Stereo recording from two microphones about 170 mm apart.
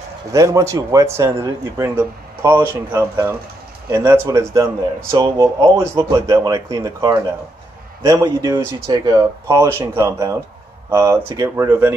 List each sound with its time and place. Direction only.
0.3 s a man's voice: 20° right (ahead or behind)